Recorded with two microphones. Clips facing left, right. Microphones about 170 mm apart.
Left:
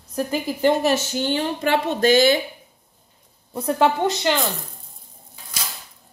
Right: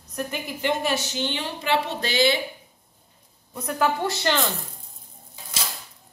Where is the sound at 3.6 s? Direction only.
30° left (ahead or behind).